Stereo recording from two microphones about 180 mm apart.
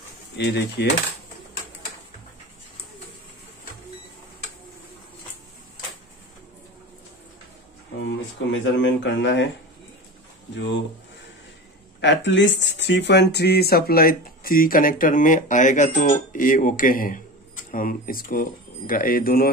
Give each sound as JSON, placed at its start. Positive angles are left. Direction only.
{"t": 0.4, "sound": "speech", "side_deg": 70}
{"t": 8.0, "sound": "speech", "side_deg": 90}
{"t": 12.0, "sound": "speech", "side_deg": 85}